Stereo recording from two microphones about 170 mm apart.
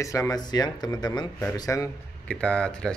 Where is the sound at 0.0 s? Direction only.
20° left (ahead or behind).